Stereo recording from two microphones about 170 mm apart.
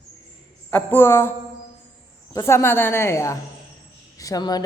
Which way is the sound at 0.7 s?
10° left (ahead or behind).